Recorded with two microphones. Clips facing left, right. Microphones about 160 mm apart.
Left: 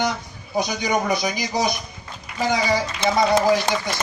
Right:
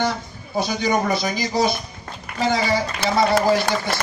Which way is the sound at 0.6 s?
15° left (ahead or behind).